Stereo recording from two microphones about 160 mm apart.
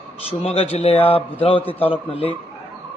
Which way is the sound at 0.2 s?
40° left (ahead or behind).